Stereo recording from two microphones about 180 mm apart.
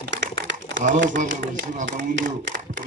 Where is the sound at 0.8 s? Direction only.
45° right (ahead or behind).